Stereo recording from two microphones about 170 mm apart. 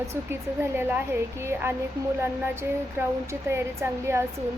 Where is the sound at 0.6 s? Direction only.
15° right (ahead or behind).